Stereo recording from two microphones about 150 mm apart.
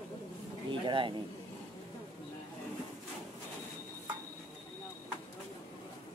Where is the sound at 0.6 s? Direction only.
35° right (ahead or behind).